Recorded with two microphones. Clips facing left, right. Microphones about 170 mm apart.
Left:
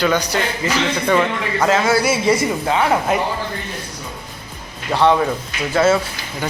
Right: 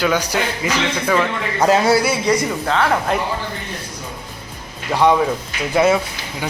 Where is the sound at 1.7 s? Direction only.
35° right (ahead or behind).